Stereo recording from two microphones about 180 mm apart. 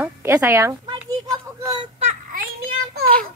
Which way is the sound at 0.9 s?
20° right (ahead or behind).